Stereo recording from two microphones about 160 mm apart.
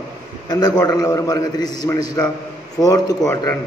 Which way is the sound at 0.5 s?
25° left (ahead or behind).